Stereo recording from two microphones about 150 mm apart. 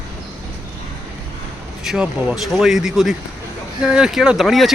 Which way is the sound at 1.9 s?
5° right (ahead or behind).